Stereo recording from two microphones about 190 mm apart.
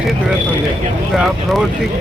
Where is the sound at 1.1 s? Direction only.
Centre (ahead or behind).